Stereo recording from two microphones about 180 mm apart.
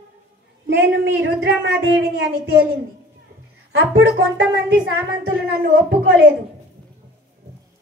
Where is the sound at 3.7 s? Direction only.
90° right.